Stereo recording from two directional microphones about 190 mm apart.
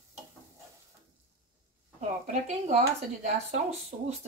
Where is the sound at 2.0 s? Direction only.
40° right (ahead or behind).